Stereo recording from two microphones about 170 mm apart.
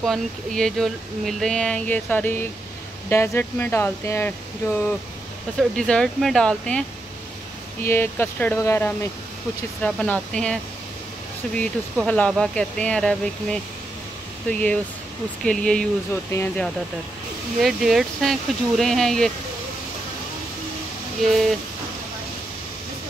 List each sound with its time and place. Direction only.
0.0 s speech: 5° left (ahead or behind)
5.6 s speech: 5° left (ahead or behind)
7.8 s speech: 15° left (ahead or behind)
21.2 s speech: centre (ahead or behind)